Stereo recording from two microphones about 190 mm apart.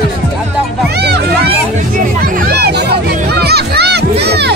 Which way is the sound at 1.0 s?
60° right (ahead or behind).